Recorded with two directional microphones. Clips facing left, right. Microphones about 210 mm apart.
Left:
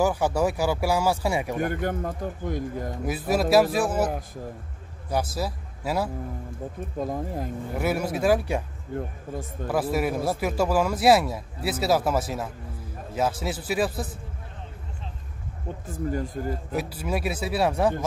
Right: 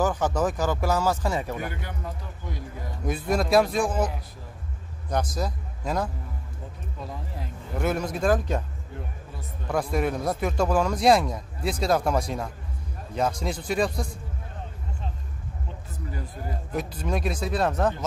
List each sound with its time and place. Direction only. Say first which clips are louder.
0.0 s speech: left 1 dB; 10° left (ahead or behind)
1.6 s a man's voice: left 8 dB; 50° left (ahead or behind)
3.1 s speech: left 1 dB; 5° left (ahead or behind)
5.1 s a man's voice: left 1 dB; 5° left (ahead or behind)
7.0 s a man's voice: left 9 dB; 50° left (ahead or behind)
7.7 s speech: even; 10° left (ahead or behind)
9.7 s speech: left 1 dB; 5° left (ahead or behind)
15.9 s a man's voice: left 10 dB; 45° left (ahead or behind)
16.7 s speech: right 2 dB; 5° left (ahead or behind)